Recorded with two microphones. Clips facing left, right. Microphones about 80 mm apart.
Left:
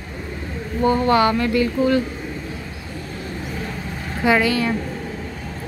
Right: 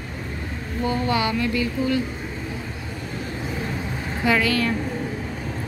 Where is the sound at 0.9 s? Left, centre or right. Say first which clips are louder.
Left 7 dB; left.